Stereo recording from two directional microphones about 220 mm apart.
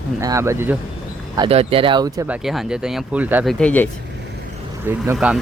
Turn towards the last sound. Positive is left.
turn(degrees=-10)  # may be behind; listen again after turning